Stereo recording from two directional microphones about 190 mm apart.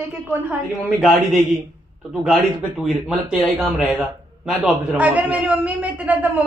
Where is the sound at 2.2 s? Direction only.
Centre (ahead or behind).